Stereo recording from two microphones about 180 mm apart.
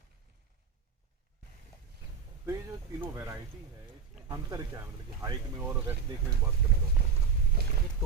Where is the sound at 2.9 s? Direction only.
15° right (ahead or behind).